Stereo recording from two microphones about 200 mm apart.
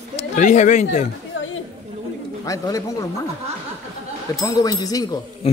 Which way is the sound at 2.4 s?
15° left (ahead or behind).